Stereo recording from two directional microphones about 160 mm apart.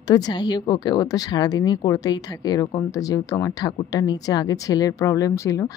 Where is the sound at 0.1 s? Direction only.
25° left (ahead or behind).